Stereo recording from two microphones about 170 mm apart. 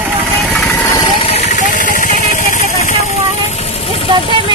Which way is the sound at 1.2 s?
35° left (ahead or behind).